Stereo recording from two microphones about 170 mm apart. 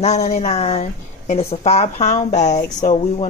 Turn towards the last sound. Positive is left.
turn(degrees=40)  # may be behind; listen again after turning